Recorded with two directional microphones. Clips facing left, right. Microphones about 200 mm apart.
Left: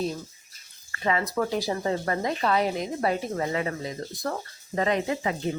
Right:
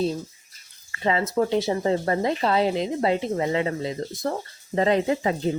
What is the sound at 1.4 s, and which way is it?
Speech, 25° right (ahead or behind).